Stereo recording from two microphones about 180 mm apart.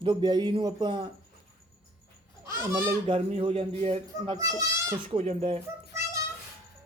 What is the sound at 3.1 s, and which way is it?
A man's voice, 30° right (ahead or behind).